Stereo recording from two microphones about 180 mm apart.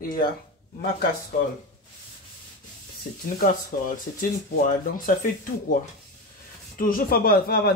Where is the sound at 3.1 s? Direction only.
55° left (ahead or behind).